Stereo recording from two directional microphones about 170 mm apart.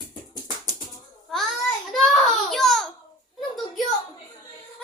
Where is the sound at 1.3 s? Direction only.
Centre (ahead or behind).